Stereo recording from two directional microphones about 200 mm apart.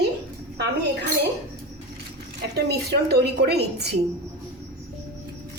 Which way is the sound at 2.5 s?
55° right (ahead or behind).